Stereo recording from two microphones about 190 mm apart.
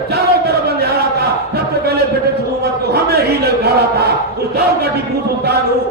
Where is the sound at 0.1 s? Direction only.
55° right (ahead or behind).